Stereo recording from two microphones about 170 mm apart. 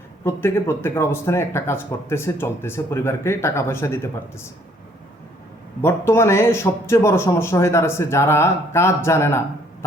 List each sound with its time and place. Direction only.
0.3 s speech: 15° left (ahead or behind)
5.8 s speech: 15° left (ahead or behind)